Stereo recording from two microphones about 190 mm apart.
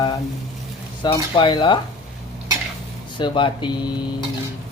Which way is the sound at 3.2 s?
25° left (ahead or behind).